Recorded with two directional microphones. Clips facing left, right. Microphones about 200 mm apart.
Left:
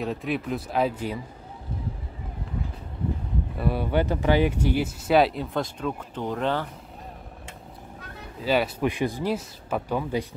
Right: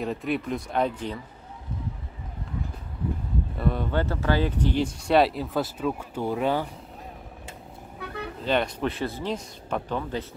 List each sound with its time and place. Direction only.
0.0 s speech: centre (ahead or behind)
3.5 s speech: 5° left (ahead or behind); by 6.7 s 10° right (ahead or behind)
8.0 s vehicle: 65° right (ahead or behind)
8.4 s speech: 5° left (ahead or behind)